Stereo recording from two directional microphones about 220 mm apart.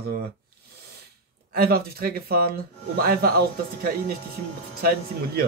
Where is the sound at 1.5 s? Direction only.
45° right (ahead or behind).